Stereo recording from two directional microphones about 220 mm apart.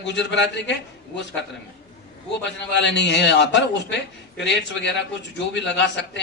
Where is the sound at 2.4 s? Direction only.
55° left (ahead or behind).